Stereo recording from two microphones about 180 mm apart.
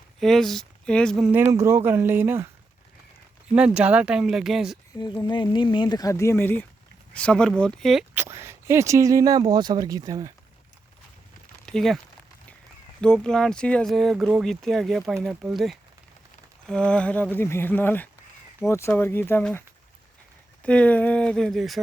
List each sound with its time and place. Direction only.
0.2 s speech: centre (ahead or behind)
1.3 s speech: 15° right (ahead or behind)
3.5 s speech: 5° right (ahead or behind)
4.9 s speech: 25° left (ahead or behind); by 8.0 s centre (ahead or behind)
8.1 s speech: 15° right (ahead or behind)
11.6 s a sound: centre (ahead or behind)
13.0 s speech: 5° left (ahead or behind)